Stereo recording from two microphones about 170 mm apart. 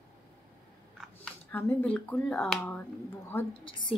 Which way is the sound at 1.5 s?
10° left (ahead or behind).